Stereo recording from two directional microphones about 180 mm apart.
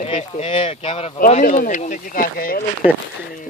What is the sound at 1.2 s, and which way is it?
Speech, 45° left (ahead or behind).